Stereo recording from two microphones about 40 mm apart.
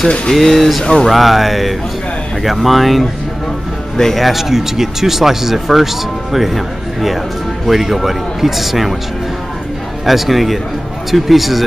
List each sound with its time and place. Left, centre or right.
0.3 s speech: centre
3.9 s speech: centre
4.2 s speech: centre
10.0 s speech: centre